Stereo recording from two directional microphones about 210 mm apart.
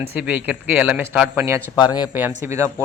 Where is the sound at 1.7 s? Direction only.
20° left (ahead or behind).